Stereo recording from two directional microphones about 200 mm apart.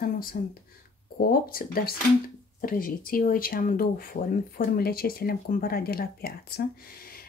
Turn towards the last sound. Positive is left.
turn(degrees=50)  # may be behind; listen again after turning